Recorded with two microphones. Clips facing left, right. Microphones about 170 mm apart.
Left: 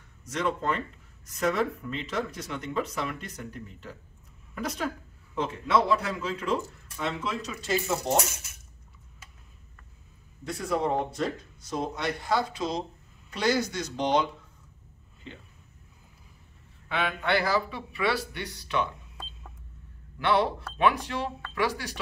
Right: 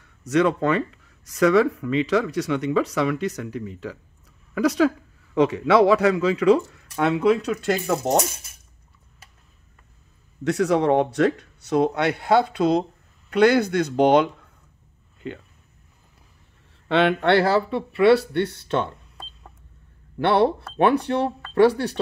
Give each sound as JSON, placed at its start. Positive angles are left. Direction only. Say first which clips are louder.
{"t": 0.2, "sound": "speech", "louder": "right 10 dB", "side_deg": -70}
{"t": 8.1, "sound": "speech", "louder": "right 5 dB", "side_deg": -35}
{"t": 10.4, "sound": "speech", "louder": "right 9 dB", "side_deg": -80}
{"t": 16.8, "sound": "speech", "louder": "right 11 dB", "side_deg": -70}
{"t": 20.2, "sound": "speech", "louder": "right 6 dB", "side_deg": -65}